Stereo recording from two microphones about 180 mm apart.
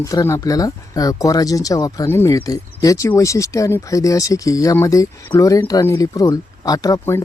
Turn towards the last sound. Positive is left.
turn(degrees=15)  # may be behind; listen again after turning